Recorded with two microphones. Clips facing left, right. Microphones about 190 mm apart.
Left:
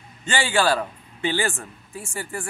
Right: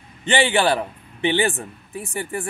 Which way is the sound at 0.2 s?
20° right (ahead or behind).